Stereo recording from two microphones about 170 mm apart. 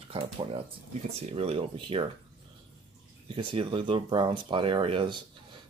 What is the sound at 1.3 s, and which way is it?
Speech, 35° right (ahead or behind).